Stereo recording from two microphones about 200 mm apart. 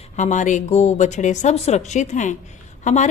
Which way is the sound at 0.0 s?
35° left (ahead or behind).